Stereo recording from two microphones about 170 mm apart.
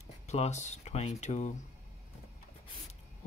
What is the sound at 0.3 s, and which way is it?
Speech, 40° left (ahead or behind).